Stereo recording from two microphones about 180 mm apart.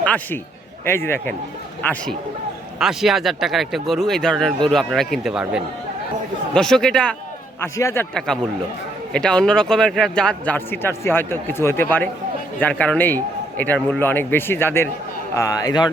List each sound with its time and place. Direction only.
0.0 s a man's voice: 10° left (ahead or behind)
2.7 s a man's voice: centre (ahead or behind); by 15.9 s 20° left (ahead or behind)